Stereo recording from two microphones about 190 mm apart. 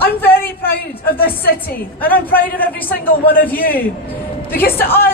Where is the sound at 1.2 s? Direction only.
50° left (ahead or behind).